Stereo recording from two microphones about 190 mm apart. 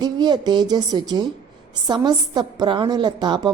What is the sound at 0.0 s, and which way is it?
A woman's voice, 20° right (ahead or behind).